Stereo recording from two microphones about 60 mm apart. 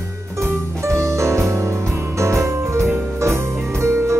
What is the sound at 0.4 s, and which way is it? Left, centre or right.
Music, right.